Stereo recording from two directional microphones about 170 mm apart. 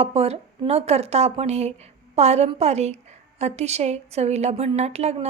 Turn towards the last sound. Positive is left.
turn(degrees=-40)  # may be behind; listen again after turning